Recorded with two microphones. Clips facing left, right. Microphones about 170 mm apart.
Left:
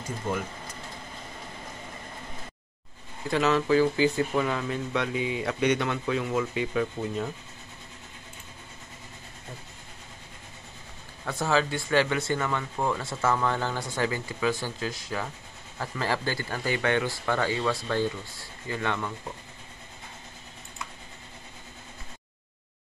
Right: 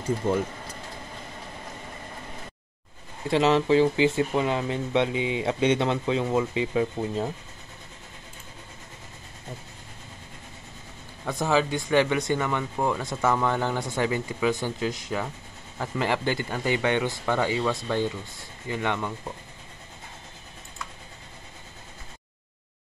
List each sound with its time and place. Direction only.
3.3 s speech: 25° right (ahead or behind)
11.2 s speech: 15° right (ahead or behind)